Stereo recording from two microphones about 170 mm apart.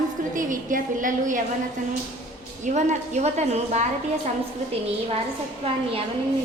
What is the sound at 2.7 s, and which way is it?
A woman's voice, 45° right (ahead or behind).